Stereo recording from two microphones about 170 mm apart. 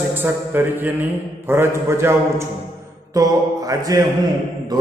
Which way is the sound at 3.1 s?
20° right (ahead or behind).